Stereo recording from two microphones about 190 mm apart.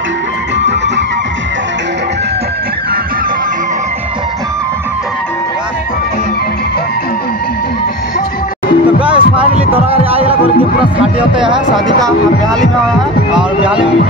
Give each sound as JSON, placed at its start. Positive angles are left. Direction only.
{"t": 9.0, "sound": "music", "side_deg": -30}
{"t": 10.8, "sound": "music", "side_deg": -5}
{"t": 13.3, "sound": "music", "side_deg": -5}